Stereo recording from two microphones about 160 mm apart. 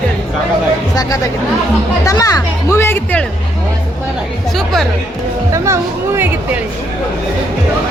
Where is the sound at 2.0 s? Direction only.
20° left (ahead or behind).